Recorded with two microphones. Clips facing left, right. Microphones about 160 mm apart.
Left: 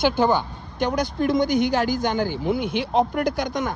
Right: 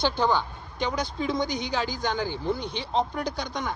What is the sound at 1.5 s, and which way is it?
Speech, 55° left (ahead or behind).